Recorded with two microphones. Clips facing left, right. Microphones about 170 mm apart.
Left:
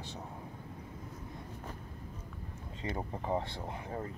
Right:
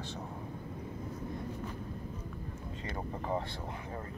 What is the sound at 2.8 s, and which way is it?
Speech, 20° left (ahead or behind).